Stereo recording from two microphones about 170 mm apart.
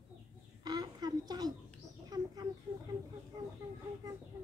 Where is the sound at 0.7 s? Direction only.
25° right (ahead or behind).